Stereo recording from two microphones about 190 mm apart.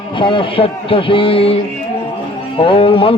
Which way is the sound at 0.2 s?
25° left (ahead or behind).